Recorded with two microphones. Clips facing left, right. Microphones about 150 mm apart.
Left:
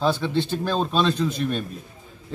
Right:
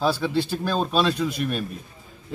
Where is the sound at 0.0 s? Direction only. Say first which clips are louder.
Even; 5° right (ahead or behind).